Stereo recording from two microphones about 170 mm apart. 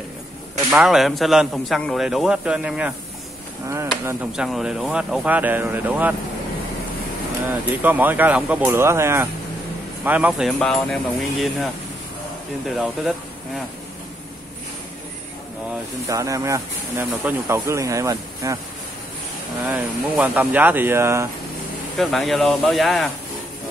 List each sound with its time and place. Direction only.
0.7 s a man's voice: centre (ahead or behind)
3.6 s speech: 15° right (ahead or behind)
4.3 s speech: 5° right (ahead or behind)
7.8 s a man's voice: 10° right (ahead or behind)
16.1 s speech: 20° right (ahead or behind)
19.6 s speech: 5° right (ahead or behind)
21.9 s a man's voice: centre (ahead or behind)